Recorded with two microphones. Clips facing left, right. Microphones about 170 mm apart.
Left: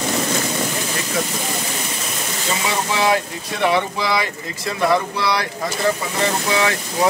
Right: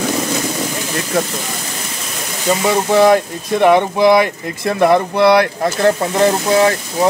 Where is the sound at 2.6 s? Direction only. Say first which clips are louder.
Right 9 dB; 50° right (ahead or behind).